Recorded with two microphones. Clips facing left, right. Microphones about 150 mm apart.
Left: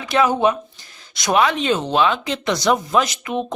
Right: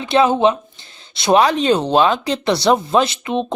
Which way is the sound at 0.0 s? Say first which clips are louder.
Right 3 dB; 30° right (ahead or behind).